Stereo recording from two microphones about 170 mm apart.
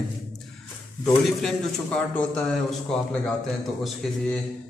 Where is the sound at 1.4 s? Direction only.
Centre (ahead or behind).